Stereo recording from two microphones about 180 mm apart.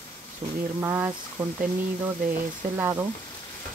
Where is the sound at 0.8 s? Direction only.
15° right (ahead or behind).